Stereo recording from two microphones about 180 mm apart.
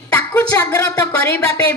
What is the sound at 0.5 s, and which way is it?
Speech, 20° left (ahead or behind).